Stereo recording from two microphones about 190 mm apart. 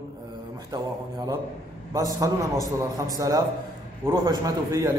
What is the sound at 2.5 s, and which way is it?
Speech, 20° left (ahead or behind).